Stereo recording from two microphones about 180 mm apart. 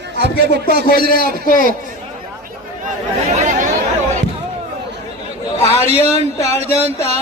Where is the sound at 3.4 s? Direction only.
45° right (ahead or behind).